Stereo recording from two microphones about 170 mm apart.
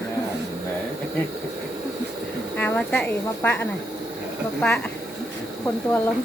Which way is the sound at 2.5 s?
10° left (ahead or behind).